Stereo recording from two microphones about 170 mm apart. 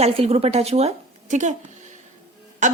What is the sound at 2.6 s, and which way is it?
Speech, 45° right (ahead or behind).